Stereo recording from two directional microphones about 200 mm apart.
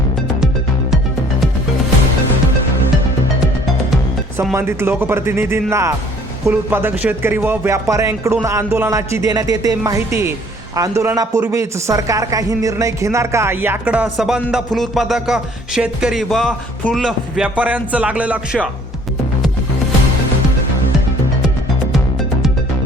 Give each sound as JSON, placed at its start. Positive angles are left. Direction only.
{"t": 4.5, "sound": "speech", "side_deg": -10}